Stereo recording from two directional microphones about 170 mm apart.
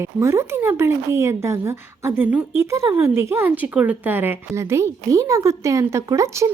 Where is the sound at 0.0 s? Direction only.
15° right (ahead or behind).